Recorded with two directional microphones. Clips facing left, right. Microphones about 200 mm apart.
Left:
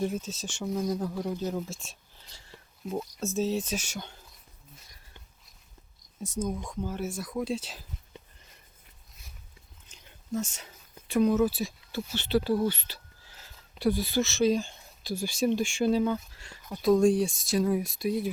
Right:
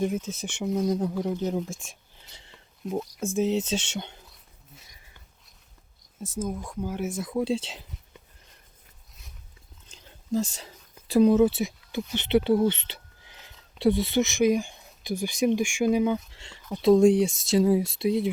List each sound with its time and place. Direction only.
0.0 s speech: 15° right (ahead or behind)
1.8 s a sound: 15° right (ahead or behind)
3.3 s speech: 20° right (ahead or behind)
6.1 s speech: 5° right (ahead or behind); by 7.8 s 30° right (ahead or behind)
9.9 s whispering: 35° right (ahead or behind)
11.1 s speech: 30° right (ahead or behind)